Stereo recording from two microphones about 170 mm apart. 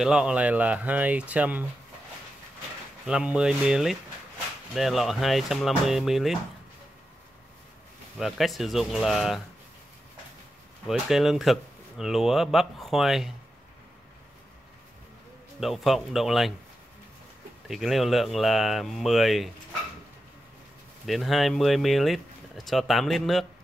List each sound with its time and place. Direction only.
0.0 s speech: 5° right (ahead or behind)
3.1 s speech: 5° right (ahead or behind)
8.2 s speech: centre (ahead or behind)
10.9 s speech: centre (ahead or behind)
15.6 s speech: centre (ahead or behind)
17.6 s speech: centre (ahead or behind)
21.0 s speech: centre (ahead or behind)